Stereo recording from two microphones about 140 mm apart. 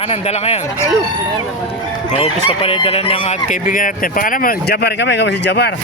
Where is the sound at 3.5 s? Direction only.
75° left (ahead or behind).